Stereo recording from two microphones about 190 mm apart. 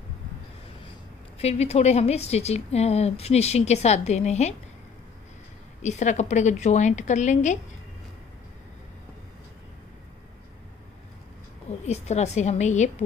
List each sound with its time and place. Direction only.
1.4 s a woman's voice: 35° left (ahead or behind)
5.8 s a woman's voice: 40° left (ahead or behind)
11.8 s a woman's voice: 35° left (ahead or behind)